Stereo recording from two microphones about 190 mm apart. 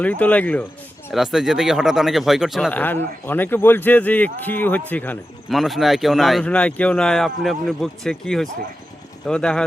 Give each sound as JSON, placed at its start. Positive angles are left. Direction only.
{"t": 0.0, "sound": "speech", "side_deg": 5}
{"t": 2.6, "sound": "speech", "side_deg": 10}